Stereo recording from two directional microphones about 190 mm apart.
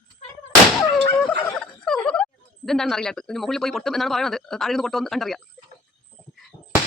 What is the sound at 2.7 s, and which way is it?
Speech, centre (ahead or behind).